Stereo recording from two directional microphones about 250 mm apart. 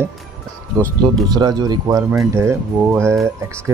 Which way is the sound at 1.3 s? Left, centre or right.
Centre.